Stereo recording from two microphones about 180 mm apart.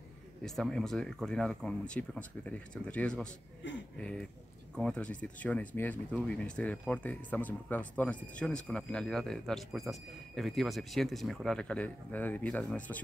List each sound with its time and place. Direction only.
0.6 s speech: centre (ahead or behind)
3.6 s speech: 90° left
4.0 s speech: 5° left (ahead or behind)